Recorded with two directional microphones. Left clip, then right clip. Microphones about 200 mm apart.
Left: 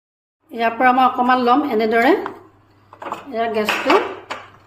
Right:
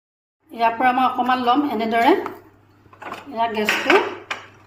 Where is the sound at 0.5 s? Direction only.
30° left (ahead or behind).